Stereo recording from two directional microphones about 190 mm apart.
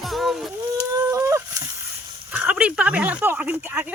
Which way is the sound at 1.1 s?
15° right (ahead or behind).